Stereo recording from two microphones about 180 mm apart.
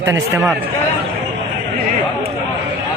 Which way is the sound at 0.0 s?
15° right (ahead or behind).